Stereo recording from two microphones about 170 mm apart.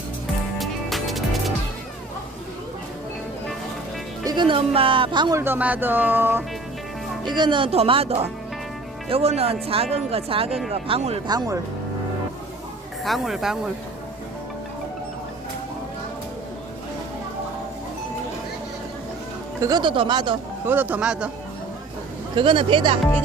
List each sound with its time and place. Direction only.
0.6 s music: centre (ahead or behind)
4.3 s speech: 30° right (ahead or behind)
5.4 s speech: 10° right (ahead or behind)
7.3 s speech: 25° right (ahead or behind)
11.3 s speech: 20° right (ahead or behind)
13.1 s speech: centre (ahead or behind)
19.5 s speech: 20° right (ahead or behind)
20.7 s speech: 10° right (ahead or behind)
22.4 s speech: 30° right (ahead or behind)